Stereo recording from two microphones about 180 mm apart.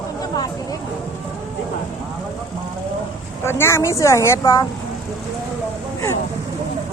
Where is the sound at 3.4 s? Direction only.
15° left (ahead or behind).